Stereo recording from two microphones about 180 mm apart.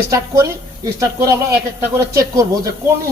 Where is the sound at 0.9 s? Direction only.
20° right (ahead or behind).